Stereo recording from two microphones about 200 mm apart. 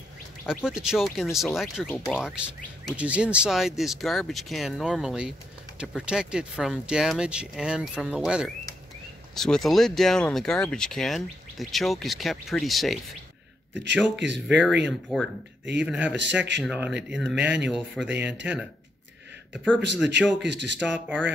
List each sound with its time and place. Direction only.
0.7 s speech: 5° right (ahead or behind)
14.1 s speech: 60° right (ahead or behind)
14.5 s speech: 5° right (ahead or behind)
20.4 s speech: 60° right (ahead or behind)
20.8 s speech: 5° right (ahead or behind)